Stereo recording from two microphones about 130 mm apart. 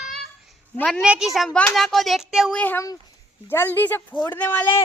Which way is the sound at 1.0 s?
5° right (ahead or behind).